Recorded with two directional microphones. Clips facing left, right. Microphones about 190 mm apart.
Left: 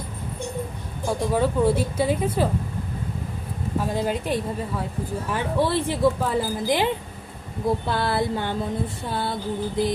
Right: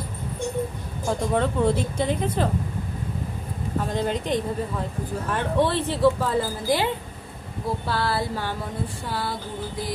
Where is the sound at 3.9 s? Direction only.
5° left (ahead or behind).